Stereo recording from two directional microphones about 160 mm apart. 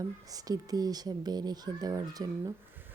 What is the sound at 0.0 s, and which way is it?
Speech, 25° right (ahead or behind).